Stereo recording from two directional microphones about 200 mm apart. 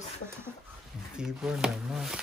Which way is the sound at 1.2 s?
5° right (ahead or behind).